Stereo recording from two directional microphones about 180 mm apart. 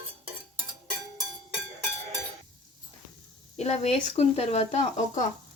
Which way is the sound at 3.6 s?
35° left (ahead or behind).